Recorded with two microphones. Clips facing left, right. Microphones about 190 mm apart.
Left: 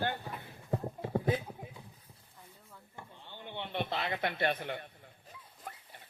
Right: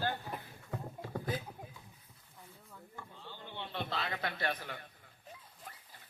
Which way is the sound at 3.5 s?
20° left (ahead or behind).